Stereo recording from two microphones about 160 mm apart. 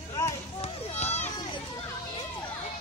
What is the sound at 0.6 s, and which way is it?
Children playing, 40° left (ahead or behind).